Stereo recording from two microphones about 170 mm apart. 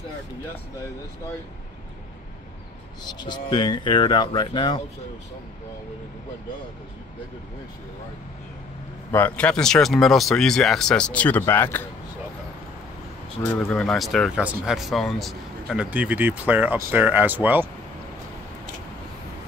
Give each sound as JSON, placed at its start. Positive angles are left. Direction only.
{"t": 3.1, "sound": "speech", "side_deg": 25}
{"t": 9.1, "sound": "speech", "side_deg": 10}
{"t": 13.5, "sound": "speech", "side_deg": 5}